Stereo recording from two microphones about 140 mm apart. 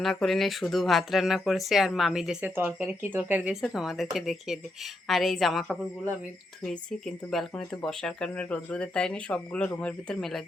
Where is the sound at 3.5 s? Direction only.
Centre (ahead or behind).